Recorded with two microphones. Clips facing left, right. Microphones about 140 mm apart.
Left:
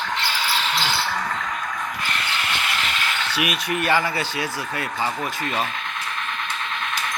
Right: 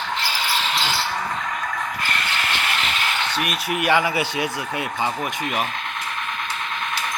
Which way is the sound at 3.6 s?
10° right (ahead or behind).